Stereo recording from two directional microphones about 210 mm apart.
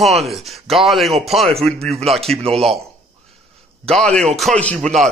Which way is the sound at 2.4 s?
30° right (ahead or behind).